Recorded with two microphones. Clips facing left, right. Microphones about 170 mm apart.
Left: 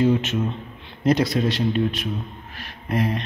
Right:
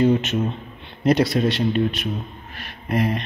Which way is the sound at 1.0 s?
65° right (ahead or behind).